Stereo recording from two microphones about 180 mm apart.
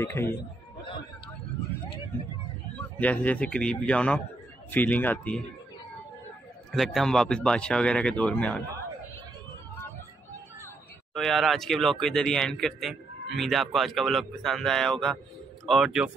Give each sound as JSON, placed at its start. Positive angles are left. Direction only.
{"t": 0.0, "sound": "speech", "side_deg": 15}
{"t": 3.0, "sound": "speech", "side_deg": 10}
{"t": 6.7, "sound": "speech", "side_deg": 0}
{"t": 11.1, "sound": "speech", "side_deg": 0}